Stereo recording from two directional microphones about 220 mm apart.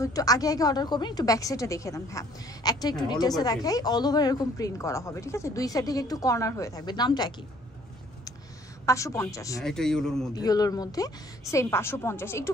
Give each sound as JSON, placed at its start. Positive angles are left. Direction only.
{"t": 0.0, "sound": "speech", "side_deg": 15}
{"t": 8.8, "sound": "speech", "side_deg": 15}
{"t": 9.6, "sound": "a man's voice", "side_deg": 0}
{"t": 10.3, "sound": "speech", "side_deg": 15}